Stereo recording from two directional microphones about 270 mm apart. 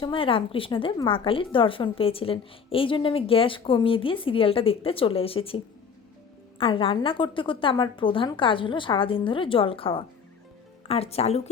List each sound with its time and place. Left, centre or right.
0.0 s a woman's voice: centre